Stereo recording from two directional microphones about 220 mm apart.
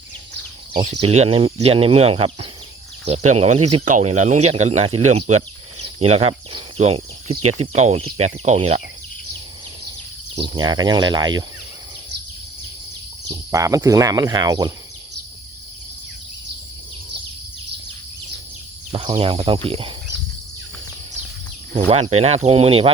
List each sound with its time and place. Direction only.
1.0 s speech: 30° right (ahead or behind)
6.1 s speech: 25° right (ahead or behind)
10.3 s speech: 20° right (ahead or behind)
13.3 s speech: 15° right (ahead or behind)
18.9 s speech: 25° right (ahead or behind)
21.8 s speech: 25° right (ahead or behind)